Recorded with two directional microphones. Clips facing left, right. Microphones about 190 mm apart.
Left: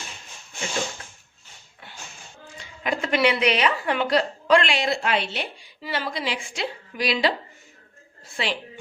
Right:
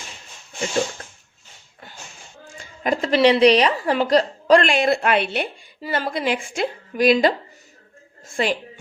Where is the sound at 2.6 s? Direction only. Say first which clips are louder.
Right 5 dB; 40° right (ahead or behind).